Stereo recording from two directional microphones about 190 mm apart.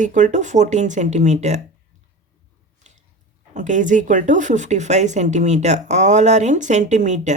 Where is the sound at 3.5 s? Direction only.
40° right (ahead or behind).